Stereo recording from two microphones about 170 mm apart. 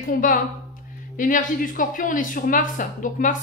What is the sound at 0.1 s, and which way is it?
Speech, 50° left (ahead or behind).